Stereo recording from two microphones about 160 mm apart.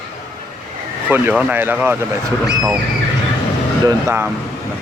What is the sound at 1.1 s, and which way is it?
Speech, 10° right (ahead or behind).